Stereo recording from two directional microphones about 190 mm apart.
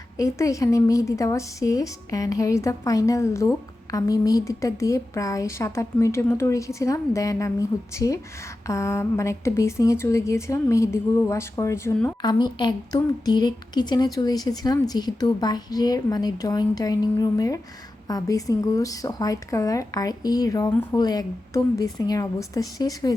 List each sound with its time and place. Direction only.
0.2 s a woman's voice: 15° left (ahead or behind)
12.2 s a woman's voice: 25° left (ahead or behind)